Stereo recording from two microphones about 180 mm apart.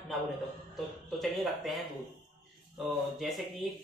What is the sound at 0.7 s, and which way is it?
Speech, centre (ahead or behind).